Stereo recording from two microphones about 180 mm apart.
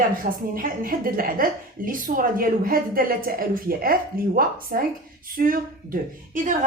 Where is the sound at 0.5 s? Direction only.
50° right (ahead or behind).